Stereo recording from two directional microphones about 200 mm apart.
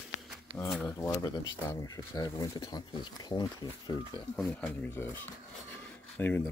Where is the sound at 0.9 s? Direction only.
15° left (ahead or behind).